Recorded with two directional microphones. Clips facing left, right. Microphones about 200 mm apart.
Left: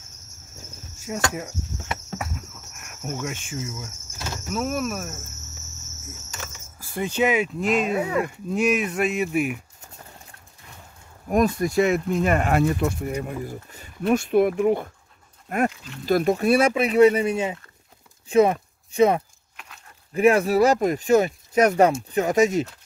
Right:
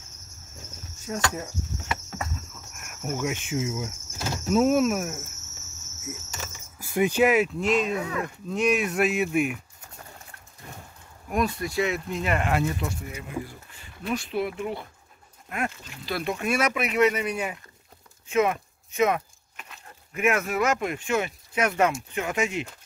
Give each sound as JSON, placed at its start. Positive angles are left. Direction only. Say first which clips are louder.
{"t": 1.0, "sound": "speech", "louder": "left 2 dB", "side_deg": 10}
{"t": 2.7, "sound": "insect", "louder": "right 1 dB", "side_deg": -5}
{"t": 4.6, "sound": "speech", "louder": "right 6 dB", "side_deg": -20}
{"t": 6.4, "sound": "speech", "louder": "even", "side_deg": -15}
{"t": 11.2, "sound": "speech", "louder": "left 6 dB", "side_deg": 45}
{"t": 19.5, "sound": "a sound", "louder": "even", "side_deg": 0}
{"t": 20.2, "sound": "speech", "louder": "left 7 dB", "side_deg": 35}